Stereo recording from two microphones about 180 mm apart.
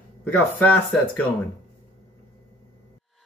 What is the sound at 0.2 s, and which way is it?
Speech, 10° left (ahead or behind).